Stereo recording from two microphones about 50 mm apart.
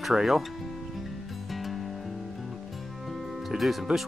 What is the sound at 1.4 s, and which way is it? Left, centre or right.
Music, centre.